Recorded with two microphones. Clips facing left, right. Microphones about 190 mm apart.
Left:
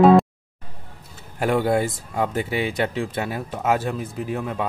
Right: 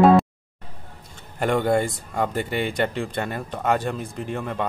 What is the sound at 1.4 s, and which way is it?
Speech, 5° left (ahead or behind).